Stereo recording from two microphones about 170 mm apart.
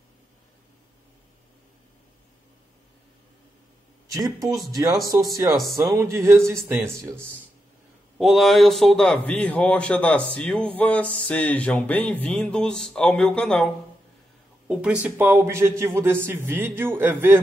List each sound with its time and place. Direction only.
5.3 s a man's voice: 20° right (ahead or behind)
8.2 s a man's voice: centre (ahead or behind)
14.7 s a man's voice: 10° right (ahead or behind)